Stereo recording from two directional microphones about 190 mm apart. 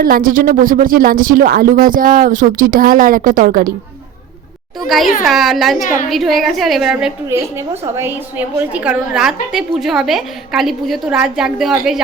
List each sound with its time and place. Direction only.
0.0 s speech: 50° right (ahead or behind)
5.2 s a woman's voice: centre (ahead or behind)